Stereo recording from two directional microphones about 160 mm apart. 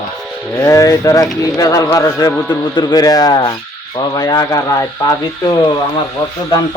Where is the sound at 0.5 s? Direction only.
20° left (ahead or behind).